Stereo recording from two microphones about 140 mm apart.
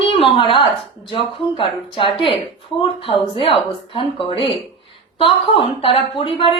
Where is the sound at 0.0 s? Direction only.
40° left (ahead or behind).